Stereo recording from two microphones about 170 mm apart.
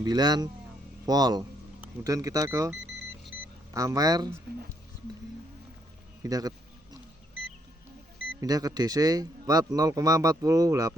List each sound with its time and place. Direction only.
0.0 s speech: 25° right (ahead or behind)
3.3 s vehicle: 10° right (ahead or behind)
3.8 s speech: 20° right (ahead or behind)
6.2 s speech: 20° right (ahead or behind)
8.4 s speech: 20° right (ahead or behind)